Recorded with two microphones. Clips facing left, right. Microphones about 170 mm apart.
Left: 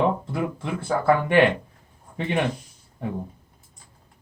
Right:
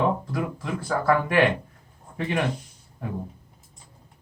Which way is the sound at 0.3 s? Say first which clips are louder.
Left 1 dB; 25° left (ahead or behind).